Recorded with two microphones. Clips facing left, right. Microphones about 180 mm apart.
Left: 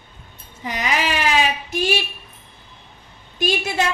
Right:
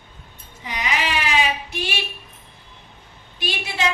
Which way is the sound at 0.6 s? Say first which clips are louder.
Left 3 dB; 45° left (ahead or behind).